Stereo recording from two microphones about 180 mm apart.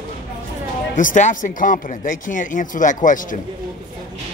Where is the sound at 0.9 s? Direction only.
45° left (ahead or behind).